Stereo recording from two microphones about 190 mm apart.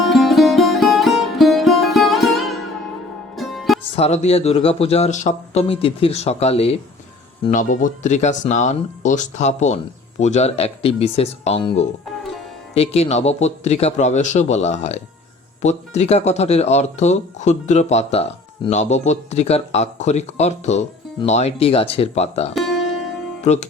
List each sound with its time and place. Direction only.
0.0 s music: centre (ahead or behind)
3.9 s speech: 35° left (ahead or behind)
22.5 s music: centre (ahead or behind)
23.4 s speech: 35° left (ahead or behind)